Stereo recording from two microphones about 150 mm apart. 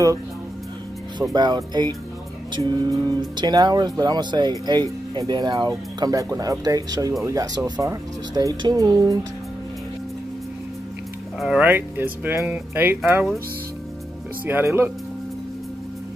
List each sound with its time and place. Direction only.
1.3 s speech: 30° right (ahead or behind)
11.3 s speech: 5° right (ahead or behind)
11.7 s speech: 15° right (ahead or behind)
14.4 s speech: 15° right (ahead or behind)